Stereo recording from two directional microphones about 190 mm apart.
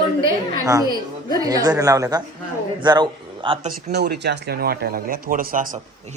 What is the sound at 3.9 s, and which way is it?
A man's voice, 60° right (ahead or behind).